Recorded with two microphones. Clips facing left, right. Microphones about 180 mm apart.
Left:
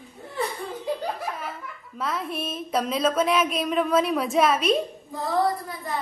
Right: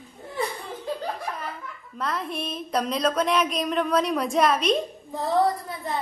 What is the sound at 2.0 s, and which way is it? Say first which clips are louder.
A woman's voice: even; 5° left (ahead or behind).